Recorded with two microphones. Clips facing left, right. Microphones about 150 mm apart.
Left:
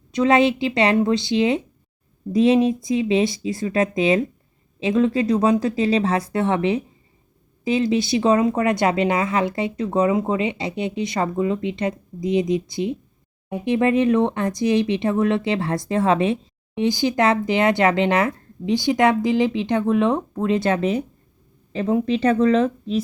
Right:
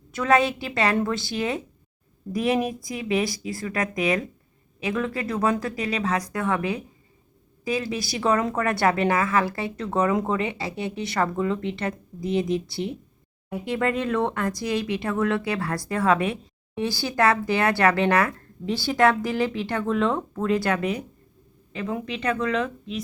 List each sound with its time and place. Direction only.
0.1 s a woman's voice: 20° left (ahead or behind)